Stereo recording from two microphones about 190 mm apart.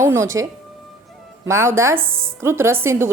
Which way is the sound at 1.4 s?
15° right (ahead or behind).